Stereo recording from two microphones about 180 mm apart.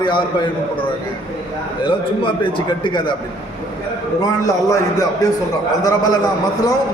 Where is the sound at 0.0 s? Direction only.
25° left (ahead or behind).